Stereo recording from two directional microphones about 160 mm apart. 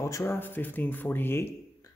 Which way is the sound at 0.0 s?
15° left (ahead or behind).